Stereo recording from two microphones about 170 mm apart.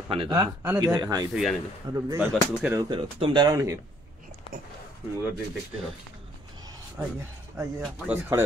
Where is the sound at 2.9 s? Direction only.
30° right (ahead or behind).